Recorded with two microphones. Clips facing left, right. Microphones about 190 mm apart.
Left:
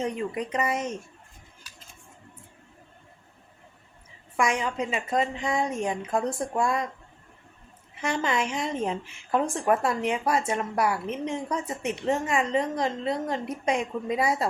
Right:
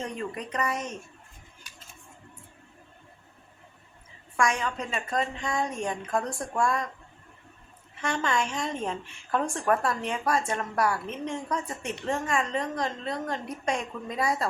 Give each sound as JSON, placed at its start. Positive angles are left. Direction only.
{"t": 0.0, "sound": "a woman's voice", "side_deg": 20}
{"t": 4.4, "sound": "a woman's voice", "side_deg": 20}
{"t": 8.0, "sound": "a woman's voice", "side_deg": 20}